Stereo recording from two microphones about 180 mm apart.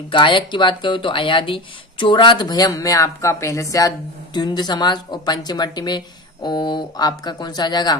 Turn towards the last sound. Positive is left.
turn(degrees=20)  # may be behind; listen again after turning